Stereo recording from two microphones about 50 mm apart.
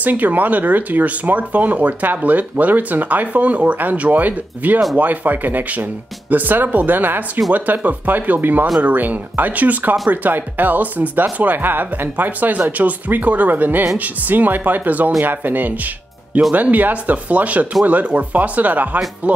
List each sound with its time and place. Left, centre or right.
0.0 s speech: right